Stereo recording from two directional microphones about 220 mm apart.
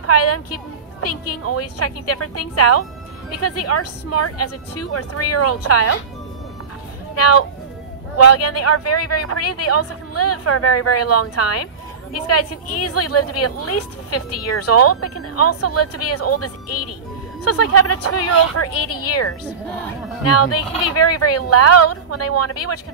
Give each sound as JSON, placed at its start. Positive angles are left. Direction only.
{"t": 0.0, "sound": "speech", "side_deg": 90}
{"t": 7.2, "sound": "speech", "side_deg": 90}